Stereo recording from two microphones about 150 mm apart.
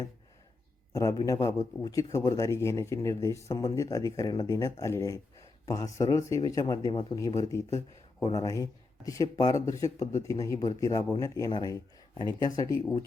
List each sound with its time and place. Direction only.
0.9 s speech: 20° left (ahead or behind)